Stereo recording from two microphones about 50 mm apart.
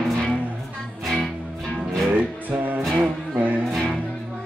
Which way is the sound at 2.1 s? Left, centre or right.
Right.